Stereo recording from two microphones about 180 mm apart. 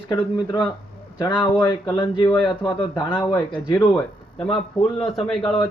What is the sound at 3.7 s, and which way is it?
Speech, 15° left (ahead or behind).